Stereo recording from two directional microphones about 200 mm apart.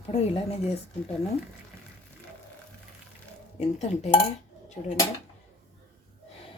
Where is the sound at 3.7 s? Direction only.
35° left (ahead or behind).